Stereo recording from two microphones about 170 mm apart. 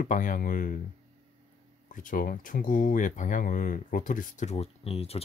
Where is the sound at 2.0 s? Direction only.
55° left (ahead or behind); by 5.2 s 35° left (ahead or behind).